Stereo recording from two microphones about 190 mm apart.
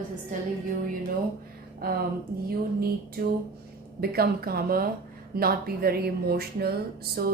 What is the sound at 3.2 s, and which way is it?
A woman's voice, 50° right (ahead or behind).